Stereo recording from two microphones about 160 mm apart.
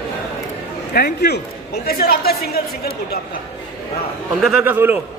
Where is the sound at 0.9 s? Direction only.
85° left.